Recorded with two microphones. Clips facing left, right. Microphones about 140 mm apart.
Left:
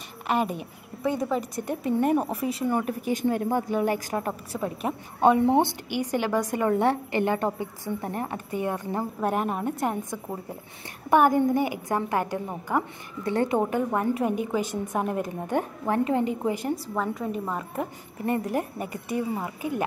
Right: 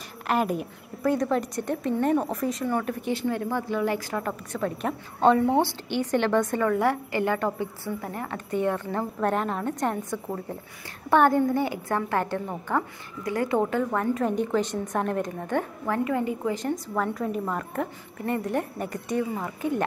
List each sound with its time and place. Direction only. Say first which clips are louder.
0.3 s a woman's voice: right 1 dB; centre (ahead or behind); by 4.3 s 25° left (ahead or behind)
4.5 s a woman's voice: right 1 dB; 15° left (ahead or behind)
5.9 s a woman's voice: right 2 dB; 10° left (ahead or behind)
6.7 s a woman's voice: left 1 dB; 25° left (ahead or behind)
8.5 s a woman's voice: right 5 dB; 10° left (ahead or behind)
13.2 s a woman's voice: left 1 dB; 25° left (ahead or behind)
13.6 s a woman's voice: even; 15° left (ahead or behind)
16.9 s a woman's voice: right 1 dB; centre (ahead or behind)